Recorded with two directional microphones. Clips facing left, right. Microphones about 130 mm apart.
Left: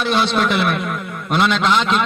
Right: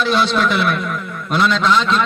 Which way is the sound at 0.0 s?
50° left (ahead or behind).